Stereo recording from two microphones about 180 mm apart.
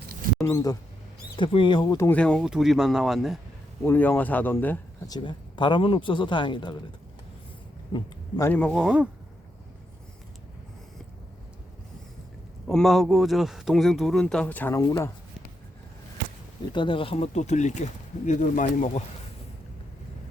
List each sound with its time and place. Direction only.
0.4 s a man's voice: 20° left (ahead or behind)
2.0 s a man's voice: 5° left (ahead or behind)
3.8 s speech: 10° left (ahead or behind)
5.0 s a man's voice: 25° left (ahead or behind)
7.9 s speech: 15° left (ahead or behind); by 9.0 s centre (ahead or behind)
12.6 s a man's voice: centre (ahead or behind); by 15.1 s 15° left (ahead or behind)
16.7 s speech: 30° left (ahead or behind); by 19.0 s 45° left (ahead or behind)